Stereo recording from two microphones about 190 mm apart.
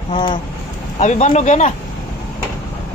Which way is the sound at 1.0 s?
40° left (ahead or behind).